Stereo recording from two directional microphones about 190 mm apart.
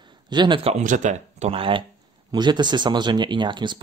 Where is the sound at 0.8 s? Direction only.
40° right (ahead or behind).